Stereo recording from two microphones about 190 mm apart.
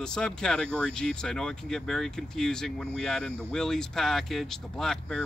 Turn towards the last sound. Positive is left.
turn(degrees=5)  # may be behind; listen again after turning